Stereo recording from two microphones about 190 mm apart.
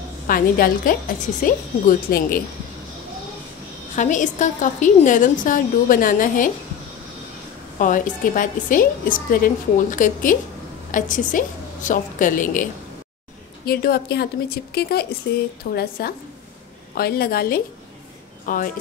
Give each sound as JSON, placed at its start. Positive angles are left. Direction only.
{"t": 0.3, "sound": "a woman's voice", "side_deg": 45}
{"t": 3.9, "sound": "a woman's voice", "side_deg": 40}
{"t": 7.8, "sound": "a woman's voice", "side_deg": 45}
{"t": 13.7, "sound": "a woman's voice", "side_deg": 55}